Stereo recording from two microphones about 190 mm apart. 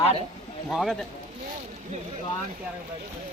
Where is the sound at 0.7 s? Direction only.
Centre (ahead or behind).